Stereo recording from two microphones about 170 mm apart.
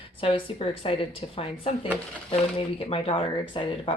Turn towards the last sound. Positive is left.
turn(degrees=30)  # may be behind; listen again after turning